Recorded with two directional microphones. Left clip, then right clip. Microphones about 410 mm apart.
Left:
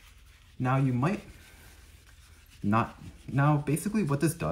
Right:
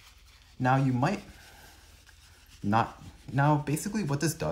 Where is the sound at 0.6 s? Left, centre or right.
Centre.